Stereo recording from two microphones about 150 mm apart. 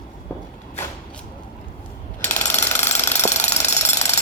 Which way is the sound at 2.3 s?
15° left (ahead or behind).